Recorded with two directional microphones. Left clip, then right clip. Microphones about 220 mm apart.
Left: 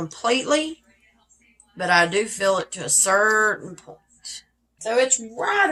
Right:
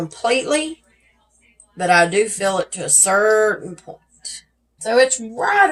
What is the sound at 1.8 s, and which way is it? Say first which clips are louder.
Speech: right 4 dB; 30° left (ahead or behind).